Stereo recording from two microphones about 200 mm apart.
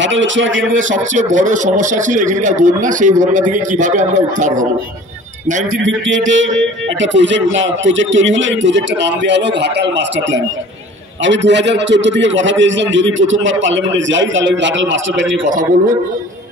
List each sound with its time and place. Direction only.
0.0 s speech: 65° right (ahead or behind)
0.7 s a man's voice: 40° right (ahead or behind)
6.0 s speech: 70° right (ahead or behind)
15.4 s a man's voice: 40° right (ahead or behind)